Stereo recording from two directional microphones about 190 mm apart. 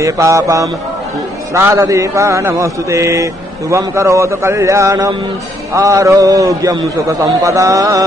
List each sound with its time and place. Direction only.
0.0 s a man's voice: 15° right (ahead or behind)